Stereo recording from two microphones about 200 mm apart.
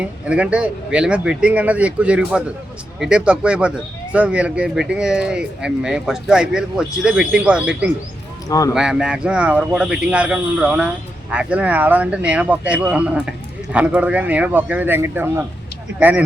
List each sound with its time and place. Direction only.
0.0 s speech: 5° right (ahead or behind)
8.4 s speech: 15° left (ahead or behind)
8.7 s speech: 5° right (ahead or behind)